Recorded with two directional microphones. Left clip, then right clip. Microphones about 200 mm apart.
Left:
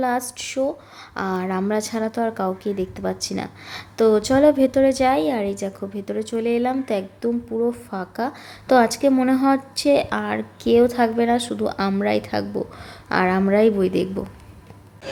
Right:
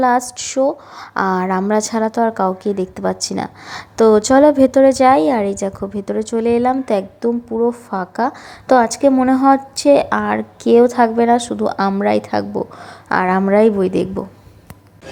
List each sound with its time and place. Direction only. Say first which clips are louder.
0.0 s a woman's voice: right 8 dB; 20° right (ahead or behind)